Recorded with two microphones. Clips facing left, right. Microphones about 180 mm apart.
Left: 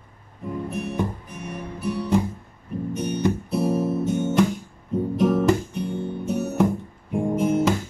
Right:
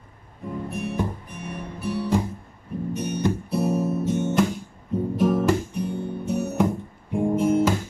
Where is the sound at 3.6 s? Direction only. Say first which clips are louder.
Left 1 dB; 30° left (ahead or behind).